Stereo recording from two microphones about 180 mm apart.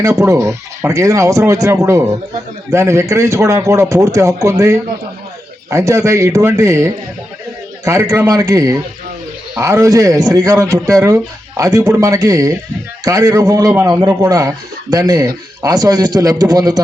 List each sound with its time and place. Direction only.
0.0 s a man's voice: 15° right (ahead or behind)